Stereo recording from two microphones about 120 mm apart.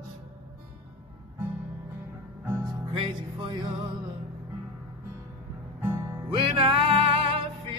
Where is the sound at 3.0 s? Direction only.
45° right (ahead or behind).